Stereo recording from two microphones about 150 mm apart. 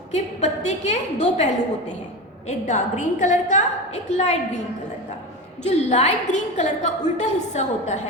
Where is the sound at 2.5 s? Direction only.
50° left (ahead or behind).